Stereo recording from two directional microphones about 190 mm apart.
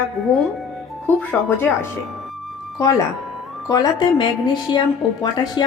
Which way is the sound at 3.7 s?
20° left (ahead or behind).